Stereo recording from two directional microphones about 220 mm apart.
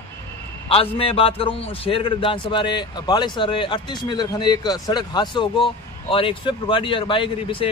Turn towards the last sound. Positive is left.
turn(degrees=25)  # may be behind; listen again after turning